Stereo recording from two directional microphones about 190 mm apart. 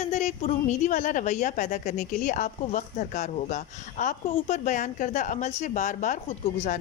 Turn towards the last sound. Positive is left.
turn(degrees=35)  # may be behind; listen again after turning